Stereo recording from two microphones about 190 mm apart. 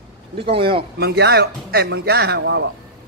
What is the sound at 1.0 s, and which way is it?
Speech, 60° right (ahead or behind).